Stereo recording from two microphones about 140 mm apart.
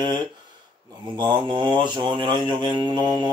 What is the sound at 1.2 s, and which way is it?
Speech, 35° right (ahead or behind).